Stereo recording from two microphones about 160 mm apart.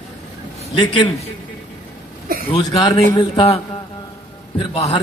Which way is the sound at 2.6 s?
20° left (ahead or behind).